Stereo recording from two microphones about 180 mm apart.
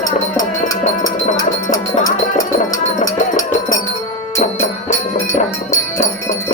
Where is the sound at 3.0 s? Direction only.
45° left (ahead or behind).